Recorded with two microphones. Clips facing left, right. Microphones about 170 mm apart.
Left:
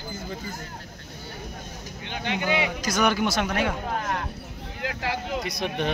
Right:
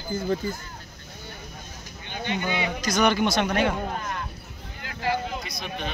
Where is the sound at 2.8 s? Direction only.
5° left (ahead or behind).